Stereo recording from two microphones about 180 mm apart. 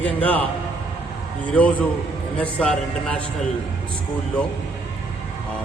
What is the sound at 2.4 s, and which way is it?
Speech, 5° left (ahead or behind).